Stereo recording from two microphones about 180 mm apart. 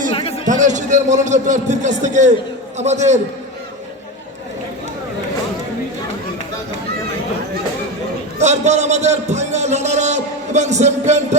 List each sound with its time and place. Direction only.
0.1 s a sound: 30° left (ahead or behind)
0.4 s a man's voice: 45° right (ahead or behind)
8.4 s a man's voice: 40° right (ahead or behind)